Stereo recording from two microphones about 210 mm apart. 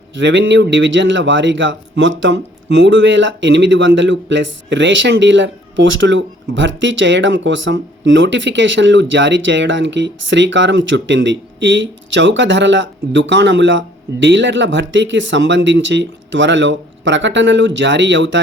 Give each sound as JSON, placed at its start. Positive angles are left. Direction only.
{"t": 0.1, "sound": "a man's voice", "side_deg": -60}